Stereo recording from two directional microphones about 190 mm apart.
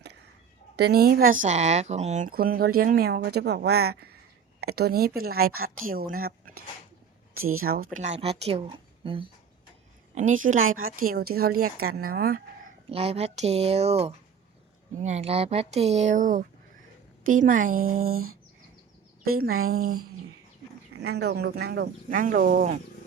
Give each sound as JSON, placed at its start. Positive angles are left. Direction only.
{"t": 0.8, "sound": "speech", "side_deg": -55}
{"t": 7.3, "sound": "speech", "side_deg": -90}
{"t": 7.6, "sound": "speech", "side_deg": -50}
{"t": 7.9, "sound": "speech", "side_deg": -40}
{"t": 10.2, "sound": "speech", "side_deg": -45}
{"t": 12.9, "sound": "speech", "side_deg": -30}
{"t": 21.0, "sound": "speech", "side_deg": -60}